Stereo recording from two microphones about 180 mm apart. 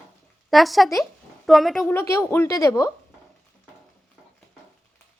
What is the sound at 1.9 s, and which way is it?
Speech, 15° left (ahead or behind).